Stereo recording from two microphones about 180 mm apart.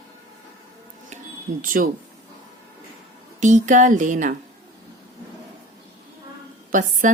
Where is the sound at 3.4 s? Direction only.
45° right (ahead or behind).